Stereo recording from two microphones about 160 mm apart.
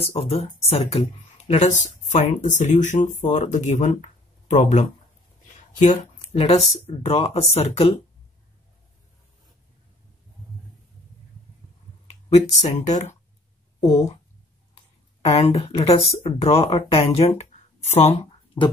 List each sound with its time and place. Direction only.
0.0 s speech: 40° left (ahead or behind)
12.3 s speech: 45° left (ahead or behind)
15.2 s speech: 40° left (ahead or behind)